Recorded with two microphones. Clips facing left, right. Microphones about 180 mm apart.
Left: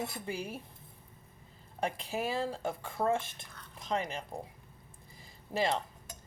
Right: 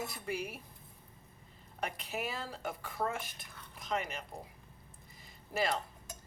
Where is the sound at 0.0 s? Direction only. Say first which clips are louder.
Left 1 dB; 30° left (ahead or behind).